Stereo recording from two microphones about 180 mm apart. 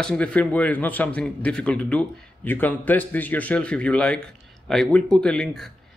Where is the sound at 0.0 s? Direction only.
5° left (ahead or behind).